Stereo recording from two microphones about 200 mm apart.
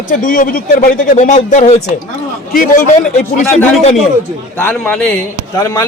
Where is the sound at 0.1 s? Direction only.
40° left (ahead or behind).